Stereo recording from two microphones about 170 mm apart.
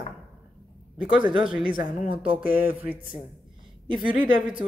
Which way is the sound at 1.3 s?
5° right (ahead or behind).